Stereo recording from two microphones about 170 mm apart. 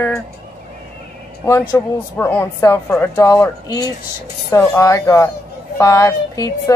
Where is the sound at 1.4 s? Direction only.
15° left (ahead or behind).